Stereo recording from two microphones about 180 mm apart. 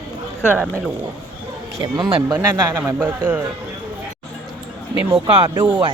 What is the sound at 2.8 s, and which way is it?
Speech, 5° right (ahead or behind).